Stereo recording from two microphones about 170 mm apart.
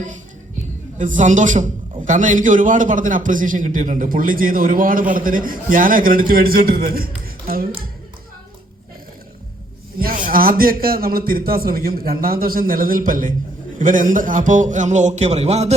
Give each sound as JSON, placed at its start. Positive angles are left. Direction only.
{"t": 0.9, "sound": "a man's voice", "side_deg": -45}
{"t": 10.0, "sound": "a man's voice", "side_deg": -55}